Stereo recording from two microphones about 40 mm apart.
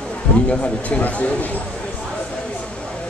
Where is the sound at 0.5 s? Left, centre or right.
Left.